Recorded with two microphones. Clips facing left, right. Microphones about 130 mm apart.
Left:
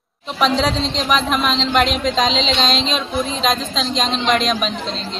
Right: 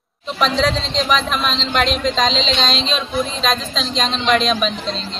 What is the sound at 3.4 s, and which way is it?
A woman's voice, 5° left (ahead or behind).